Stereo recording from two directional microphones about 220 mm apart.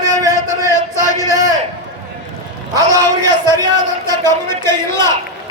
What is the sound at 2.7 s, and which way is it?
Music, 15° right (ahead or behind).